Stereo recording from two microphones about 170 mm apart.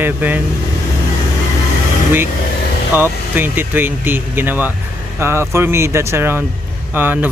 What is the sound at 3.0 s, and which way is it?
Speech, 10° right (ahead or behind).